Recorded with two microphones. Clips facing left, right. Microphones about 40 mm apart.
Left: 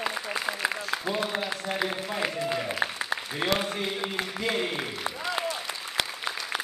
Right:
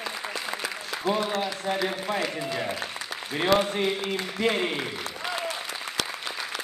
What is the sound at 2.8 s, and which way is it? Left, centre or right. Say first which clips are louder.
Applause: left 6 dB; left.